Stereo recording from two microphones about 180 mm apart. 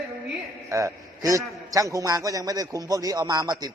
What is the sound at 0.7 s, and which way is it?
A man's voice, 15° right (ahead or behind).